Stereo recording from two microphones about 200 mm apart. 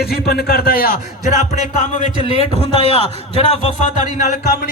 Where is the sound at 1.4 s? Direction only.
35° left (ahead or behind).